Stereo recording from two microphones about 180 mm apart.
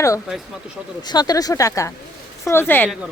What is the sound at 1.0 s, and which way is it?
Speech, 20° left (ahead or behind).